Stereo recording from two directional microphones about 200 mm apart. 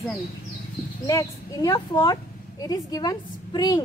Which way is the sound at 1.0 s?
15° left (ahead or behind).